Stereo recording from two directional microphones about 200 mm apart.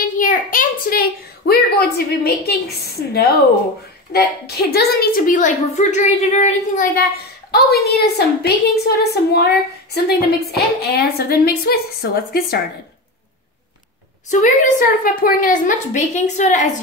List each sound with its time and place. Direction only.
0.0 s a sound: 45° left (ahead or behind)
1.5 s a woman's voice: 50° left (ahead or behind)
7.5 s a woman's voice: 55° left (ahead or behind)
14.3 s a woman's voice: 40° left (ahead or behind)